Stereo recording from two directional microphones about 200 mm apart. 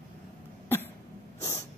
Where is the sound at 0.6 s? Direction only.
10° left (ahead or behind).